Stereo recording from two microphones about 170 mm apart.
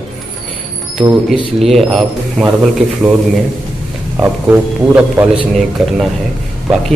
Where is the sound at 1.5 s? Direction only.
Centre (ahead or behind).